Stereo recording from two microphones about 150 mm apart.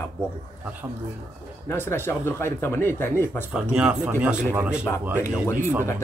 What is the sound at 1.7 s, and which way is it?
Speech, 15° left (ahead or behind).